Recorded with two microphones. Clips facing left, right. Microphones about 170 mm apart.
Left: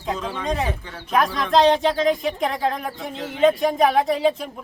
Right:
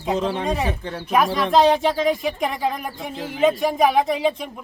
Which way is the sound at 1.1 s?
5° right (ahead or behind).